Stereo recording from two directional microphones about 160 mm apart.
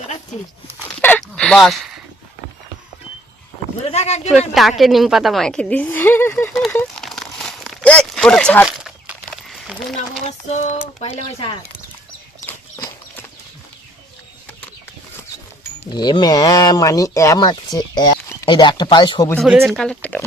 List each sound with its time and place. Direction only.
1.0 s a sound: 5° left (ahead or behind)
3.9 s speech: 45° left (ahead or behind)
4.3 s speech: centre (ahead or behind)
6.4 s speech: centre (ahead or behind)
6.7 s crumpling: 5° left (ahead or behind)
9.9 s speech: 50° left (ahead or behind)
12.5 s horse: 20° left (ahead or behind)
15.9 s speech: 25° left (ahead or behind)
19.5 s speech: 5° right (ahead or behind)
19.7 s speech: 5° left (ahead or behind)